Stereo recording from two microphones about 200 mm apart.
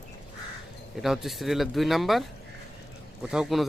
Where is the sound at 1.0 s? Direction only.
Centre (ahead or behind).